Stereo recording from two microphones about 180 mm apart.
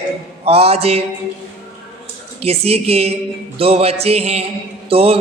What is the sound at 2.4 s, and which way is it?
A man's voice, 35° right (ahead or behind).